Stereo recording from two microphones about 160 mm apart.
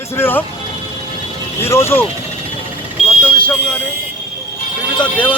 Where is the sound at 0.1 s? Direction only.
15° left (ahead or behind).